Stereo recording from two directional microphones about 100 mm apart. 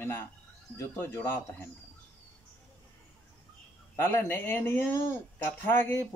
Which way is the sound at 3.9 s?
25° left (ahead or behind).